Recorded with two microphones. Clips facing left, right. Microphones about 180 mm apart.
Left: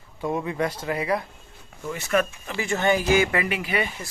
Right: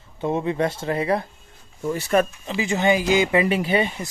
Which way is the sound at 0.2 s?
25° right (ahead or behind).